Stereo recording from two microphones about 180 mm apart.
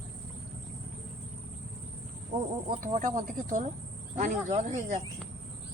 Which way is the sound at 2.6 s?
45° right (ahead or behind).